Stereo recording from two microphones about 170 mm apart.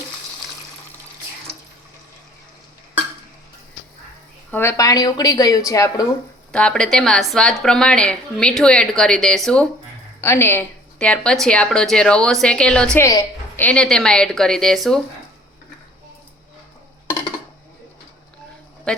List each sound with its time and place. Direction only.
4.5 s speech: 15° left (ahead or behind)
6.5 s a woman's voice: 5° left (ahead or behind)
10.2 s a woman's voice: 15° left (ahead or behind)
13.0 s a woman's voice: 20° left (ahead or behind)
13.7 s a woman's voice: 5° left (ahead or behind)